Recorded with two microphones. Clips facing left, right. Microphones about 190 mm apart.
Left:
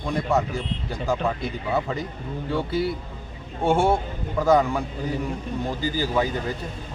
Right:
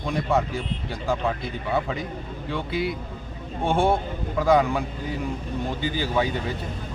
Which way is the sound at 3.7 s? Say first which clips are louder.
Left 1 dB; centre (ahead or behind).